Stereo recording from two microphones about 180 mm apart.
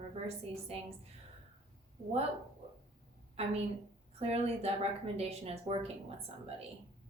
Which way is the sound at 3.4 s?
35° right (ahead or behind).